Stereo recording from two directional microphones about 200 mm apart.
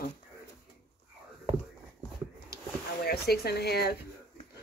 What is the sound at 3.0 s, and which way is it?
Speech, 50° left (ahead or behind).